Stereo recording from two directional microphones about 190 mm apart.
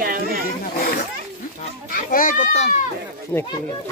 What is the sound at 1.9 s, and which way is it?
Speech, 45° left (ahead or behind).